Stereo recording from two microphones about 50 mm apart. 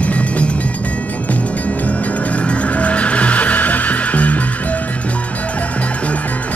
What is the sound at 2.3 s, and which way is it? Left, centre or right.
Music, left.